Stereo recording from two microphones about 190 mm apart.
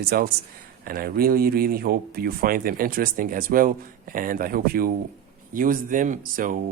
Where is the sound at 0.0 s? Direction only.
55° right (ahead or behind).